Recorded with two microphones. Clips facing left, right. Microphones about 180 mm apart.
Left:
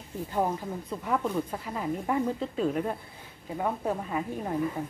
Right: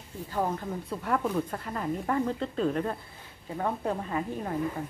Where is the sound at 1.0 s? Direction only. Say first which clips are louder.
Even; centre (ahead or behind).